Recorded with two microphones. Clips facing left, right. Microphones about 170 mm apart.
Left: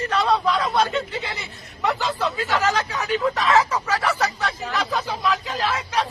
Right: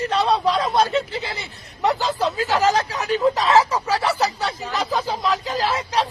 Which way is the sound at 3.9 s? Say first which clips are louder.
Right 2 dB; 30° right (ahead or behind).